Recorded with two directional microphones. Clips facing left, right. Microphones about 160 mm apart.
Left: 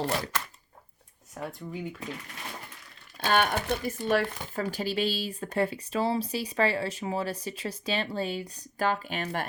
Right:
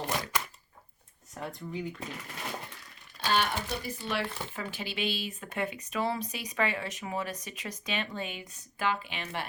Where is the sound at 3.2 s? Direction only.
55° left (ahead or behind).